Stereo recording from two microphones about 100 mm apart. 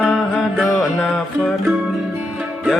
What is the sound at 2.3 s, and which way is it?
Music, 10° right (ahead or behind).